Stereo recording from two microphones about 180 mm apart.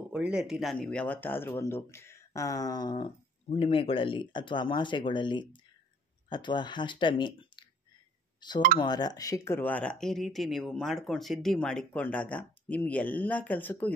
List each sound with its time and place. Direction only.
0.1 s speech: 5° right (ahead or behind)